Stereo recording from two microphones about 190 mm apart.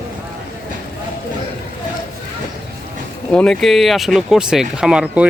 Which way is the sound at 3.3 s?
5° left (ahead or behind).